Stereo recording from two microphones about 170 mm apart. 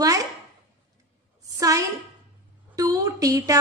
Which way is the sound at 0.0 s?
20° right (ahead or behind).